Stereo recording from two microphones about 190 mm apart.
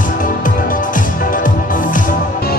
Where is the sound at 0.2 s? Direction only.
45° left (ahead or behind).